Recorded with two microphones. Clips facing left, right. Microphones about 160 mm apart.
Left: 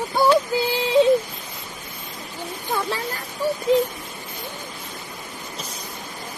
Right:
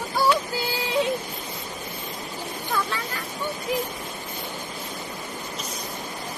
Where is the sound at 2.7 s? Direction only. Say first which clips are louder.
Left 2 dB; 30° left (ahead or behind).